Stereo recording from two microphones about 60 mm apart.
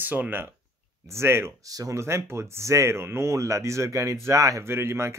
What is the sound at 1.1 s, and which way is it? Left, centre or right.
Speech, right.